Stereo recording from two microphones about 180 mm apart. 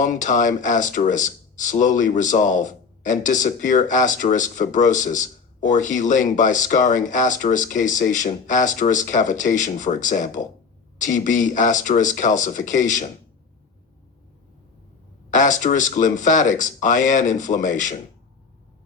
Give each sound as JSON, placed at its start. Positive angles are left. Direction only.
{"t": 0.0, "sound": "speech", "side_deg": 45}
{"t": 15.3, "sound": "speech", "side_deg": 45}